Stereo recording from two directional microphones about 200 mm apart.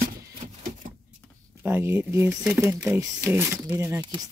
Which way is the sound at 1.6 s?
15° right (ahead or behind).